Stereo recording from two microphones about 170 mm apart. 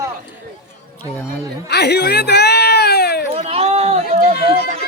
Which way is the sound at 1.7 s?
80° left.